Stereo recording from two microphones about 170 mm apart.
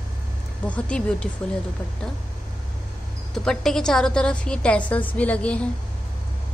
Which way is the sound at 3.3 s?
5° left (ahead or behind).